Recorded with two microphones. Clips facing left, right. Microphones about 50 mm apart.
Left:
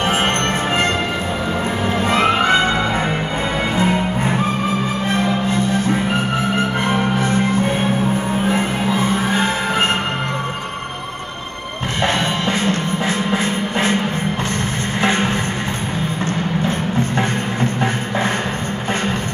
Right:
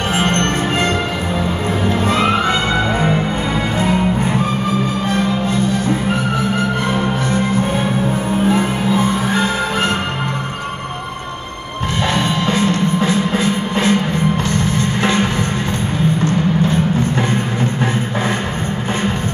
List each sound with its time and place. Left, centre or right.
2.0 s music: left
5.1 s music: left
8.5 s a sound: left
12.1 s music: left
15.0 s music: left